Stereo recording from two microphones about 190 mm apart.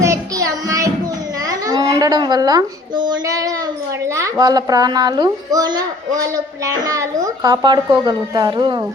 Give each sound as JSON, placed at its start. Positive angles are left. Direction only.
{"t": 0.0, "sound": "child singing", "side_deg": -15}
{"t": 1.5, "sound": "a child's voice", "side_deg": -20}